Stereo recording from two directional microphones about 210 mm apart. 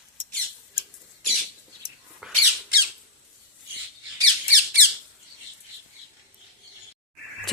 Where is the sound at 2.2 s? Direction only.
Centre (ahead or behind).